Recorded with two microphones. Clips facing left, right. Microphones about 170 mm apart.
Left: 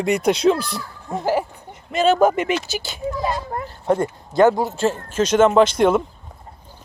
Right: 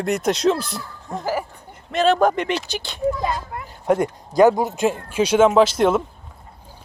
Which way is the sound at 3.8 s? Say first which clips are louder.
Right 1 dB; 10° right (ahead or behind).